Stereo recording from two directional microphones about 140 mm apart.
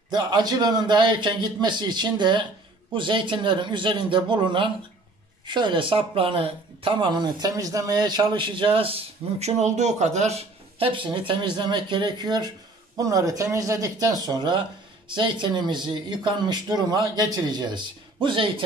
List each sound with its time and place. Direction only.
0.1 s speech: 30° right (ahead or behind)